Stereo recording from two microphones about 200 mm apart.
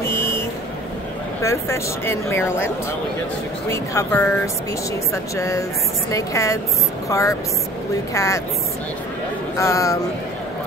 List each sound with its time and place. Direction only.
0.0 s vehicle: 15° left (ahead or behind)
1.4 s speech: 15° left (ahead or behind)
3.7 s speech: 15° left (ahead or behind)
9.6 s speech: 15° left (ahead or behind)